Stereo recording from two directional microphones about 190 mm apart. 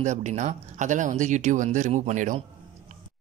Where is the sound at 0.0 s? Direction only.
40° right (ahead or behind).